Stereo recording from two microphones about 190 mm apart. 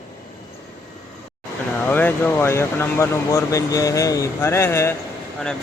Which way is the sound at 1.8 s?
10° left (ahead or behind).